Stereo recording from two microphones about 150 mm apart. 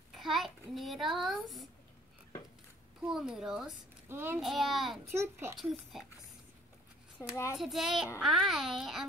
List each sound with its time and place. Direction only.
0.1 s a child's voice: centre (ahead or behind)
3.1 s a child's voice: 5° right (ahead or behind)
4.1 s speech: 15° right (ahead or behind)
4.4 s a child's voice: centre (ahead or behind)
5.1 s speech: 15° right (ahead or behind)
5.6 s a child's voice: centre (ahead or behind)
7.2 s a child's voice: 20° left (ahead or behind)
7.5 s a child's voice: centre (ahead or behind)